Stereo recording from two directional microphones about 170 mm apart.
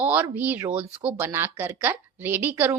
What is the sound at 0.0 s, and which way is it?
A woman's voice, 10° right (ahead or behind).